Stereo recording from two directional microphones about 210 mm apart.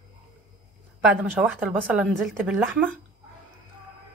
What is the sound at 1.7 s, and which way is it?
Speech, centre (ahead or behind).